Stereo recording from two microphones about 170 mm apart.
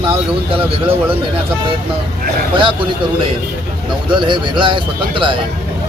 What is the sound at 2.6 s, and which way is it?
Speech, 30° right (ahead or behind).